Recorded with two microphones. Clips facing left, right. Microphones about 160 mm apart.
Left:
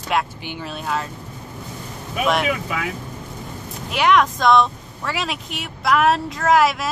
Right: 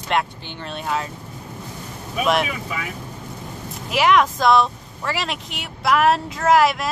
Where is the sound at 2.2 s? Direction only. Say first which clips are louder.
Even; centre (ahead or behind).